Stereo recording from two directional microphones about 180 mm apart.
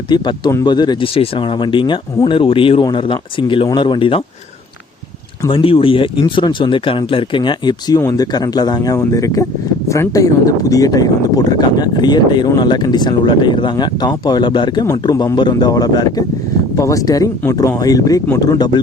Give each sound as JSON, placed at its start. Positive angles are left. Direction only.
{"t": 0.1, "sound": "speech", "side_deg": 25}
{"t": 5.5, "sound": "speech", "side_deg": 30}